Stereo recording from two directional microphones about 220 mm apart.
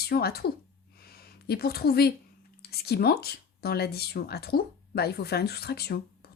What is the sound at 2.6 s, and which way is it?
Speech, 45° left (ahead or behind).